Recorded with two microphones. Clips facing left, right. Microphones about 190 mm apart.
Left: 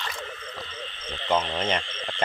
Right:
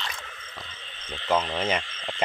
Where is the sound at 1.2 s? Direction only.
Centre (ahead or behind).